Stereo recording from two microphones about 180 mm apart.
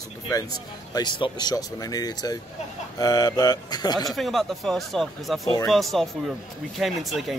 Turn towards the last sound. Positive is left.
turn(degrees=0)  # may be behind; listen again after turning